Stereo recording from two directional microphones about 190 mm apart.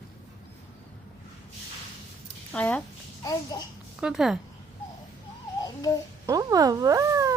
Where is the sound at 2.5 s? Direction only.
10° left (ahead or behind).